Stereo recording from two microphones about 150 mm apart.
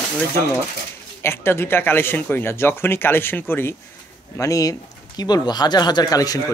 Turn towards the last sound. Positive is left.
turn(degrees=25)  # may be behind; listen again after turning